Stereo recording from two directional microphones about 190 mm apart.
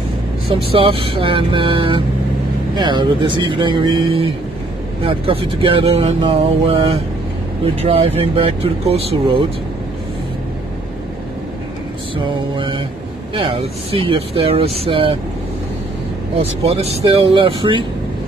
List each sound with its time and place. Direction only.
0.5 s speech: 30° right (ahead or behind)
12.5 s speech: 25° right (ahead or behind)
17.0 s speech: 25° right (ahead or behind)